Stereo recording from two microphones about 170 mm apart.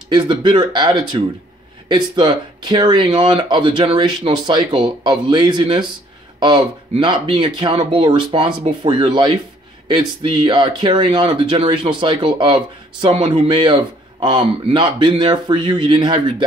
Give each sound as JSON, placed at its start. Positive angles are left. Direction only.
{"t": 0.1, "sound": "speech", "side_deg": -30}